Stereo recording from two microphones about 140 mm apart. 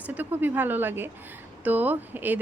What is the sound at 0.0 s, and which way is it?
Speech, 10° right (ahead or behind).